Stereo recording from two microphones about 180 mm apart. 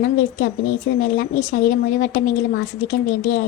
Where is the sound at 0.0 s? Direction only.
55° left (ahead or behind).